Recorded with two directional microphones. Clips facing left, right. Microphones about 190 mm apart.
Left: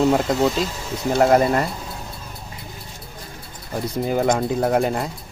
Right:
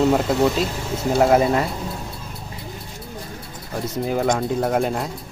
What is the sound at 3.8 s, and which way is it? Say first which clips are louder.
Speech: left 1 dB; centre (ahead or behind).